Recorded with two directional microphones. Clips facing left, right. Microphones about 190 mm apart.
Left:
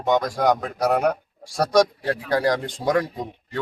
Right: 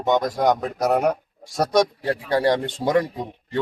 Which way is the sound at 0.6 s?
Centre (ahead or behind).